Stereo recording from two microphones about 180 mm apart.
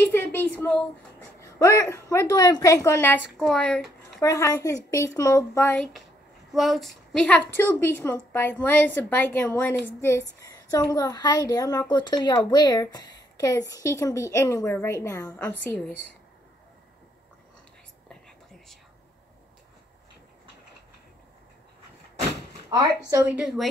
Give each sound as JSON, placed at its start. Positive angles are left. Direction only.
{"t": 0.3, "sound": "a woman's voice", "side_deg": 10}
{"t": 4.2, "sound": "a woman's voice", "side_deg": 15}
{"t": 6.5, "sound": "a woman's voice", "side_deg": 0}
{"t": 22.7, "sound": "a woman's voice", "side_deg": -20}